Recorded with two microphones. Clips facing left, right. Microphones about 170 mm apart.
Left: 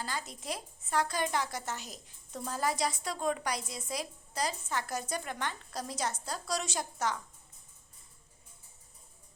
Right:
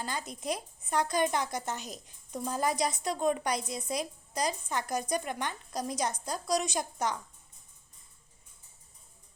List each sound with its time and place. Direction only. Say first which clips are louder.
0.0 s a woman's voice: right 3 dB; 20° right (ahead or behind)